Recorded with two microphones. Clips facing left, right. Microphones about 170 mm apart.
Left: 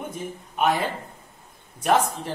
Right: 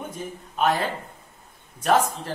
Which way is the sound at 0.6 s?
10° left (ahead or behind).